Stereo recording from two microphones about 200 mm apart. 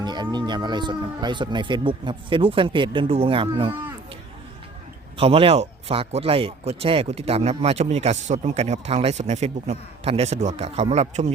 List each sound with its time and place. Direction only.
0.0 s speech: 20° right (ahead or behind)
5.1 s speech: 30° right (ahead or behind)